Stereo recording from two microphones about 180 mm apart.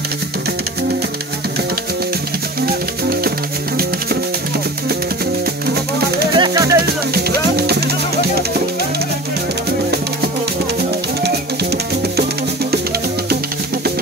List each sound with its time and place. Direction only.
2.6 s music: 55° right (ahead or behind)
6.3 s music: 25° right (ahead or behind)
7.2 s music: 60° right (ahead or behind)
11.2 s music: 65° right (ahead or behind)